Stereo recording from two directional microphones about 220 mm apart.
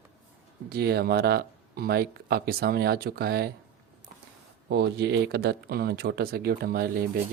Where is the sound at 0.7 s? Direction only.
45° right (ahead or behind).